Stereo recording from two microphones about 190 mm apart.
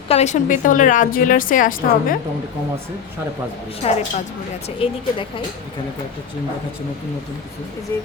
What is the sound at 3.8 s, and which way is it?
A woman's voice, 30° left (ahead or behind).